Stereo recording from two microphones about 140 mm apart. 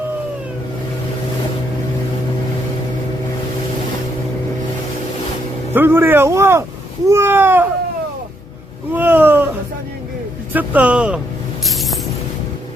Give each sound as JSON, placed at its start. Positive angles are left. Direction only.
{"t": 5.7, "sound": "speech", "side_deg": -15}
{"t": 8.9, "sound": "a sound", "side_deg": -15}
{"t": 10.5, "sound": "speech", "side_deg": -10}
{"t": 11.6, "sound": "music", "side_deg": 0}